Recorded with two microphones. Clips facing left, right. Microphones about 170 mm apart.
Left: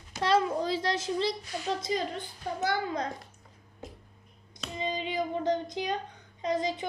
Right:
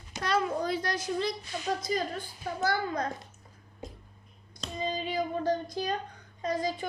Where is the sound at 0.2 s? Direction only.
25° left (ahead or behind).